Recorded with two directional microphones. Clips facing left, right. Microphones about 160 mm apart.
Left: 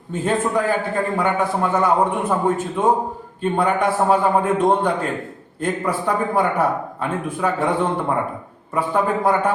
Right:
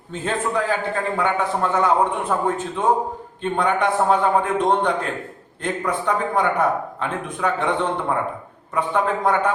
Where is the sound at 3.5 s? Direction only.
5° left (ahead or behind).